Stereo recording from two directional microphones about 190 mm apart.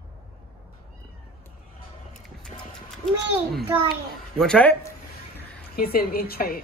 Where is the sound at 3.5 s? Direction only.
10° right (ahead or behind).